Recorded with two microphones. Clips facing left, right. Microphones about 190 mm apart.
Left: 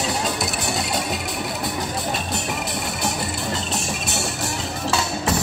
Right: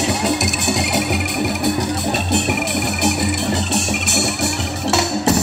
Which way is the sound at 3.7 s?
75° right (ahead or behind).